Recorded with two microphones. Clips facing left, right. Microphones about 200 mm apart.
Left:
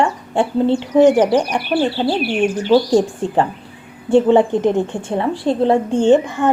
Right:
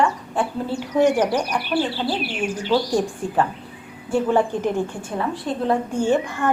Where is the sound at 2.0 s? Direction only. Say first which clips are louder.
Left 7 dB; 65° left (ahead or behind).